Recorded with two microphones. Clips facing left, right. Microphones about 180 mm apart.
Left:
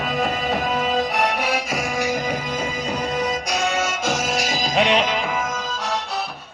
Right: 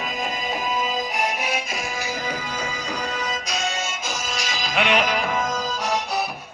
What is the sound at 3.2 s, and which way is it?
Music, 65° left (ahead or behind).